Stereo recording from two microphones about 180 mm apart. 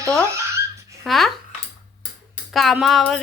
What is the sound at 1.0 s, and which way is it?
Speech, centre (ahead or behind).